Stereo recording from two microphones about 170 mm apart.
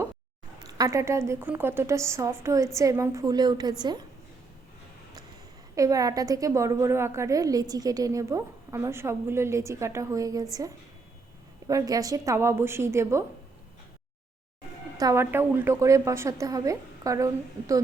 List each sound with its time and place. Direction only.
0.6 s a woman's voice: 20° right (ahead or behind)
5.7 s a woman's voice: 20° right (ahead or behind)
11.7 s a woman's voice: 20° right (ahead or behind)
14.9 s a woman's voice: 20° right (ahead or behind)